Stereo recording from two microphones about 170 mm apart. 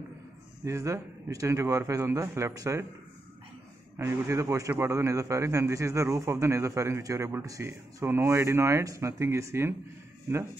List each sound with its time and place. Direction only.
0.7 s a man's voice: 15° right (ahead or behind)
3.9 s a man's voice: 15° right (ahead or behind)